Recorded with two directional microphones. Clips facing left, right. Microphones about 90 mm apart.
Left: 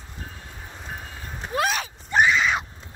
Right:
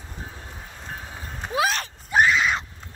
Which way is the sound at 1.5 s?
Centre (ahead or behind).